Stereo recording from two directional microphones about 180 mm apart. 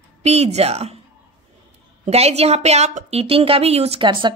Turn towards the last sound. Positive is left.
turn(degrees=-25)  # may be behind; listen again after turning